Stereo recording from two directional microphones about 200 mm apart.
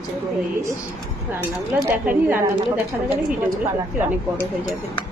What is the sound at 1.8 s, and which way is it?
A woman's voice, 10° right (ahead or behind).